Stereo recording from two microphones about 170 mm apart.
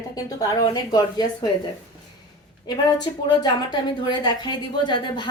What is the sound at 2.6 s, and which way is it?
A woman's voice, 25° left (ahead or behind).